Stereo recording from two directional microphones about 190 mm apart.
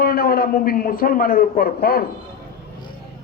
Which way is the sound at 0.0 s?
55° left (ahead or behind).